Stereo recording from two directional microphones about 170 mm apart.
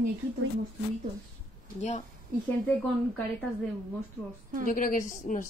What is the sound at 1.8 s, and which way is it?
Speech, 40° left (ahead or behind).